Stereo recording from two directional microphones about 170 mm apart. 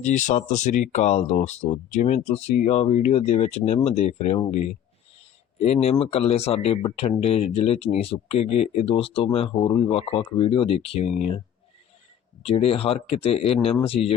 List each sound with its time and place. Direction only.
0.0 s speech: 45° left (ahead or behind)
5.5 s speech: 40° left (ahead or behind)
12.4 s speech: 35° left (ahead or behind)